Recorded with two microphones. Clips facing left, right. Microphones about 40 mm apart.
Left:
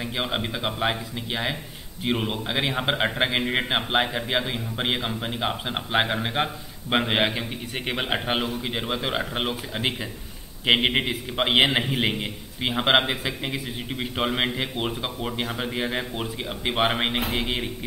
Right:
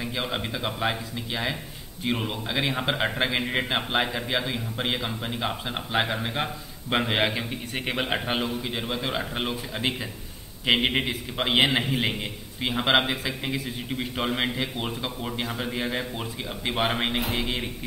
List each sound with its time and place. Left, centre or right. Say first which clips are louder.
0.0 s a man's voice: left 2 dB; centre